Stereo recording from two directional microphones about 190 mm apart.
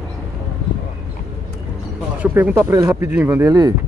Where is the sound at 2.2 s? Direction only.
10° right (ahead or behind).